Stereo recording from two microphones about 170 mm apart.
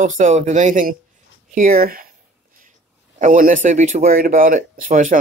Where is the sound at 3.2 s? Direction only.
50° right (ahead or behind).